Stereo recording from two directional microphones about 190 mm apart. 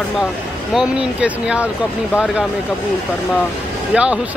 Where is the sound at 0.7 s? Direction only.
5° right (ahead or behind).